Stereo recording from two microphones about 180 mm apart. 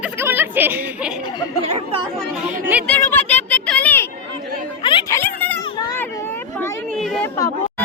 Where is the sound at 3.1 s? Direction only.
10° left (ahead or behind).